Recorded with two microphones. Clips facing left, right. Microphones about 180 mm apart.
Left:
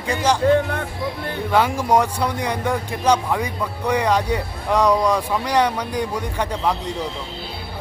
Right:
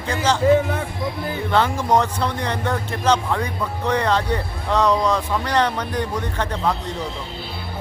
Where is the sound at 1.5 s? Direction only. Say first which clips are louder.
Left 1 dB; 10° left (ahead or behind).